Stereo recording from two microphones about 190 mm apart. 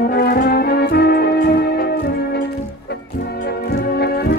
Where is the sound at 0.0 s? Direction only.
50° left (ahead or behind).